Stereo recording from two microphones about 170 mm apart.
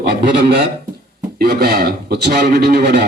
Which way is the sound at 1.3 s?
65° right (ahead or behind).